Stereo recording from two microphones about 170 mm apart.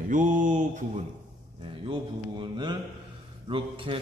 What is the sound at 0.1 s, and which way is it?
Mantra, 50° right (ahead or behind).